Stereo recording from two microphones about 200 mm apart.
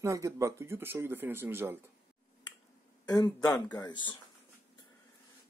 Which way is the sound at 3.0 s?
20° left (ahead or behind).